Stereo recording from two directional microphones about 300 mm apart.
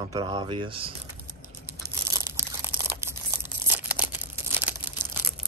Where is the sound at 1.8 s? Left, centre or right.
Centre.